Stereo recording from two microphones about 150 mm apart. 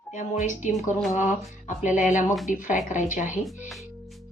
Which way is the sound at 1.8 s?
55° left (ahead or behind).